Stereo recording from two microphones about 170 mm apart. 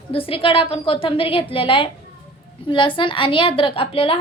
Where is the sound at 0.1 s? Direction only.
35° left (ahead or behind).